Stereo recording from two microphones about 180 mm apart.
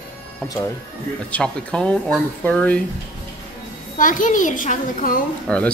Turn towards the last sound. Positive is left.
turn(degrees=5)  # may be behind; listen again after turning